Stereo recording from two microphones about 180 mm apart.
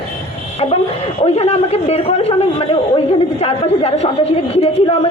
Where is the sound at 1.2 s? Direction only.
35° left (ahead or behind).